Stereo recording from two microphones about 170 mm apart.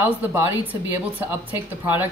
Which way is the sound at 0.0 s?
10° right (ahead or behind).